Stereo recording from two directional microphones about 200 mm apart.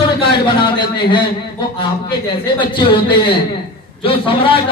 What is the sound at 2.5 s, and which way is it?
Speech, 25° left (ahead or behind).